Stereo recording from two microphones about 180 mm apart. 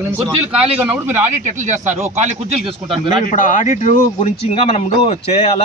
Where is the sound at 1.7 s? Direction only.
40° right (ahead or behind).